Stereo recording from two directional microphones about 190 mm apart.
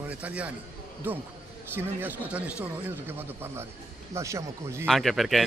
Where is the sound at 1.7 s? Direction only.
10° right (ahead or behind).